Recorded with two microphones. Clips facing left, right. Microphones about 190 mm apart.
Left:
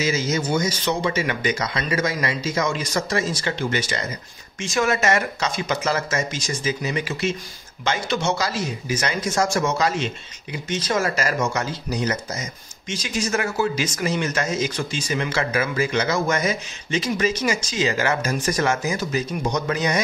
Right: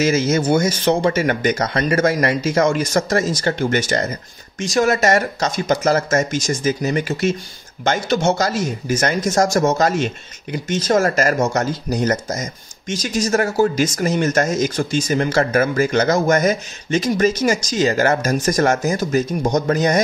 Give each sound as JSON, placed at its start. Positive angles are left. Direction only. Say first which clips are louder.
{"t": 0.0, "sound": "speech", "louder": "right 6 dB", "side_deg": -50}